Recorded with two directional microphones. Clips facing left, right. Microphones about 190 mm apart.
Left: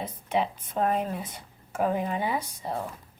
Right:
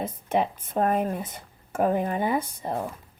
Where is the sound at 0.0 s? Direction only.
50° right (ahead or behind).